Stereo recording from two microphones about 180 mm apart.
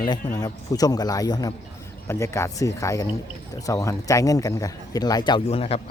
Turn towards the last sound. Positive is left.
turn(degrees=35)  # may be behind; listen again after turning